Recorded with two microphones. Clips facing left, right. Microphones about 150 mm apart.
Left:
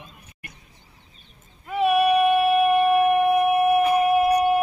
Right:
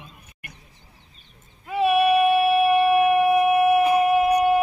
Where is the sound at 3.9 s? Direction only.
Centre (ahead or behind).